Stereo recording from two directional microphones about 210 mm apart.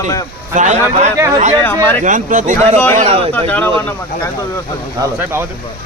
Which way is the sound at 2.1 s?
35° right (ahead or behind).